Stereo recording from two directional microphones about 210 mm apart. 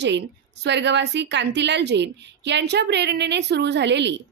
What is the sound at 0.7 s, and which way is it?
A woman's voice, 55° right (ahead or behind).